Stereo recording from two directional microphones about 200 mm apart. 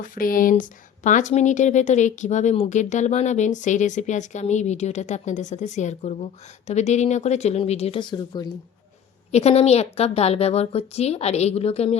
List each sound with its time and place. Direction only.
0.0 s speech: 45° left (ahead or behind); by 8.5 s 20° left (ahead or behind)
9.3 s speech: 30° left (ahead or behind)